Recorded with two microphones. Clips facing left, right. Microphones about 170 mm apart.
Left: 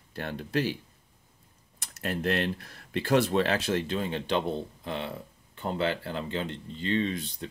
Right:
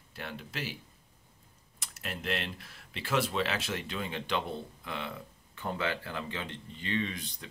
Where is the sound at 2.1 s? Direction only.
45° left (ahead or behind).